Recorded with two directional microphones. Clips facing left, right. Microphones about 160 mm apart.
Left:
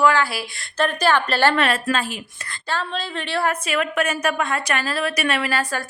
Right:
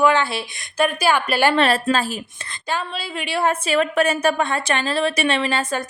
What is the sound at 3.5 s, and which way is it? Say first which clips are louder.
A woman's voice: right 3 dB; 30° right (ahead or behind).